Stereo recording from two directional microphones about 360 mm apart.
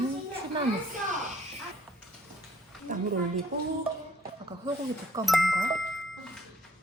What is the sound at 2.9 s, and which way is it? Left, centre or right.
Speech, right.